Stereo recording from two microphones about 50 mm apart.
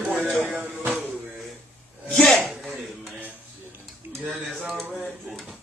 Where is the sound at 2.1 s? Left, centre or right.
Centre.